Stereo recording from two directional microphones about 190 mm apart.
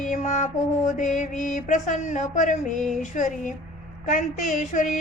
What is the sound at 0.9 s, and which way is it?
A woman's voice, 40° left (ahead or behind).